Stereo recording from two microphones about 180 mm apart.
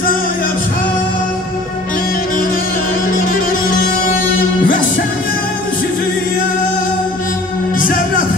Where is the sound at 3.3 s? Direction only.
50° left (ahead or behind).